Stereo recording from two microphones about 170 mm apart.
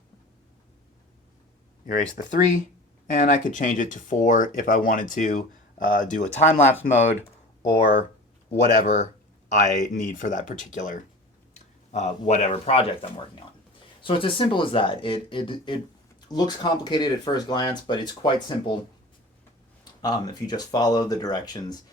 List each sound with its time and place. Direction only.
1.9 s speech: 55° left (ahead or behind)
8.8 s speech: 45° left (ahead or behind); by 18.8 s 25° left (ahead or behind)
19.8 s speech: 25° left (ahead or behind)